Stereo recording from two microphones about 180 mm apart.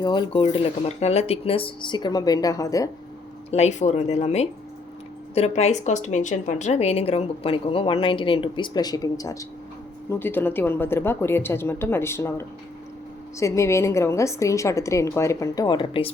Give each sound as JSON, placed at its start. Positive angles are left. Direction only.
{"t": 0.0, "sound": "speech", "side_deg": 25}
{"t": 3.5, "sound": "a woman's voice", "side_deg": 40}